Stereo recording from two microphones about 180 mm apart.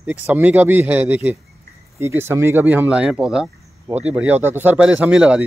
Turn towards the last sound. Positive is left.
turn(degrees=-5)  # may be behind; listen again after turning